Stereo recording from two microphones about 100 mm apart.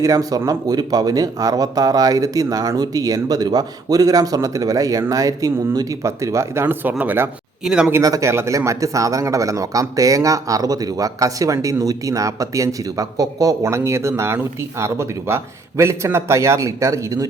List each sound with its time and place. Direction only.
0.0 s a man's voice: 35° right (ahead or behind); by 7.3 s 15° right (ahead or behind)
7.6 s speech: 5° right (ahead or behind)
8.0 s a man's voice: 30° right (ahead or behind)